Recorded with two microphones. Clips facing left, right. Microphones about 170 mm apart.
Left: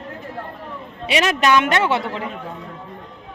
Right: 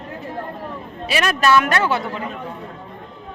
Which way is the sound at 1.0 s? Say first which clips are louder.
Left 1 dB; 25° left (ahead or behind).